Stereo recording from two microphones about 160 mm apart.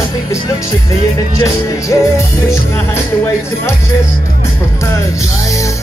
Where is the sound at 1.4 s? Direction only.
20° left (ahead or behind).